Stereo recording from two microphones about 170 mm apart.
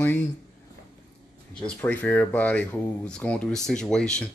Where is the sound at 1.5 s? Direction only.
10° left (ahead or behind).